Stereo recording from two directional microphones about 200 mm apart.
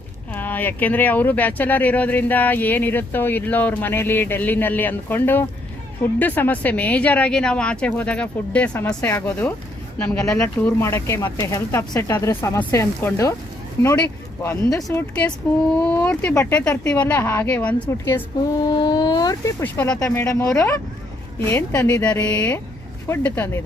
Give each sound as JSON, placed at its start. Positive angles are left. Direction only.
{"t": 0.3, "sound": "speech", "side_deg": 10}
{"t": 14.8, "sound": "speech", "side_deg": 10}
{"t": 18.6, "sound": "speech", "side_deg": 20}
{"t": 22.1, "sound": "speech", "side_deg": 5}